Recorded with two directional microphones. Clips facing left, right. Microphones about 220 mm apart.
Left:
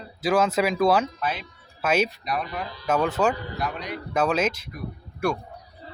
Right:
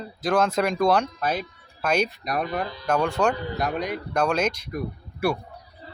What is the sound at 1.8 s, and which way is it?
Speech, 5° left (ahead or behind).